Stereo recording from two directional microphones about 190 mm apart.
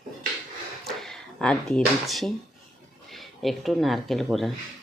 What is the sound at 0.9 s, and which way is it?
Speech, centre (ahead or behind).